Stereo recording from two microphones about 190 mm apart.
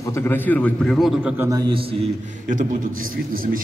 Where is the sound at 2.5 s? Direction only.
45° right (ahead or behind).